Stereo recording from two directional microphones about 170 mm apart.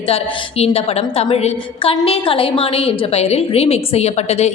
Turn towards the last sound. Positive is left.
turn(degrees=40)  # may be behind; listen again after turning